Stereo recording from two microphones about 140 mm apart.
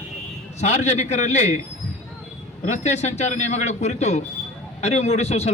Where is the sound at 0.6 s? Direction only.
55° left (ahead or behind).